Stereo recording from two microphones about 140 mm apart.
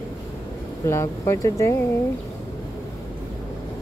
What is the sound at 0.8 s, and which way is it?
Speech, 20° left (ahead or behind).